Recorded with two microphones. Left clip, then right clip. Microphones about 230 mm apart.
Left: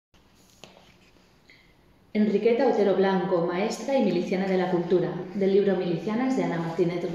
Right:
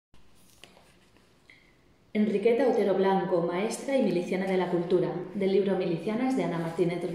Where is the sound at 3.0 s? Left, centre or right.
Centre.